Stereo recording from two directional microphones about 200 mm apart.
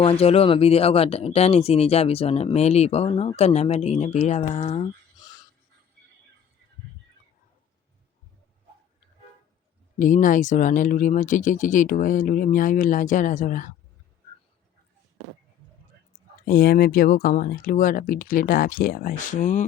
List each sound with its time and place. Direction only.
0.0 s speech: 30° left (ahead or behind)
10.0 s speech: 40° left (ahead or behind)
16.5 s speech: 45° left (ahead or behind)